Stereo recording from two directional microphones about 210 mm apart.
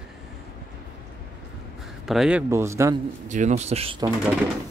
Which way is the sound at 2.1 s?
5° right (ahead or behind).